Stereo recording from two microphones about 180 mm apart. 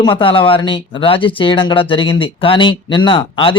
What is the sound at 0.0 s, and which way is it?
Speech, 30° left (ahead or behind).